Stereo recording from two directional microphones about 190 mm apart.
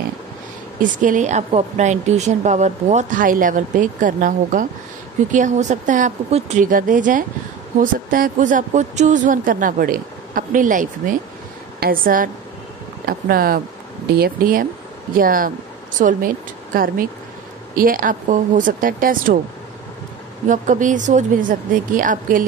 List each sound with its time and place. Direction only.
0.7 s a woman's voice: 45° right (ahead or behind)
20.4 s a woman's voice: 40° right (ahead or behind)